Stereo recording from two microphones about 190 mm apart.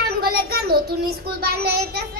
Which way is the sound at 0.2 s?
55° right (ahead or behind).